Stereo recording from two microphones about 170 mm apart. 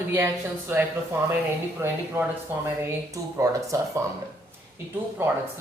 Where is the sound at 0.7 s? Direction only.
10° right (ahead or behind).